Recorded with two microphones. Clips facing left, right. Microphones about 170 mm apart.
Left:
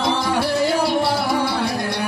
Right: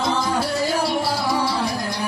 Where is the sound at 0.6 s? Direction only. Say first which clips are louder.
Left 3 dB; 60° left (ahead or behind).